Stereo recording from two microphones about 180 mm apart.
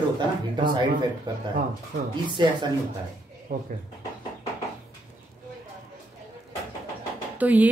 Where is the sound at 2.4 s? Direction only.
25° right (ahead or behind).